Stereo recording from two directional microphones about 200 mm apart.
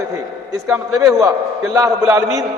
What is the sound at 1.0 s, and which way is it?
A man's voice, 15° right (ahead or behind).